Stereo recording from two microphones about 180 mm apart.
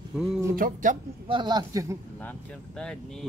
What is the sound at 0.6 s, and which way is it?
Speech, 50° right (ahead or behind).